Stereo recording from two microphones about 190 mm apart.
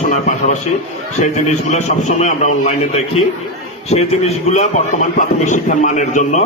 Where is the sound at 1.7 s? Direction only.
35° left (ahead or behind).